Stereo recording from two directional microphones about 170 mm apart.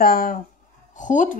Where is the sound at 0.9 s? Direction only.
50° left (ahead or behind).